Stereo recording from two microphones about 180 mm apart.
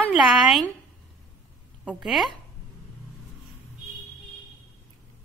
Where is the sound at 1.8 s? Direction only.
Centre (ahead or behind).